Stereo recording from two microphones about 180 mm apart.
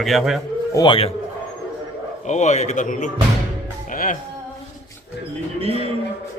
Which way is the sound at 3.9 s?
50° left (ahead or behind).